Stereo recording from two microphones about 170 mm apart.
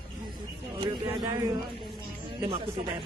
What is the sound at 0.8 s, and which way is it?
Speech, 25° right (ahead or behind).